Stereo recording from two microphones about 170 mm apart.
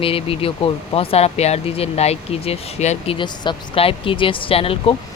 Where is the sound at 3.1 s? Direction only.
25° left (ahead or behind).